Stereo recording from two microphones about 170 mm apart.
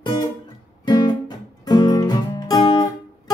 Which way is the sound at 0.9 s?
25° left (ahead or behind).